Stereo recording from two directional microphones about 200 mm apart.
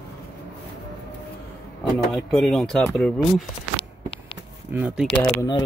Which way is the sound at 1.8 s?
Centre (ahead or behind).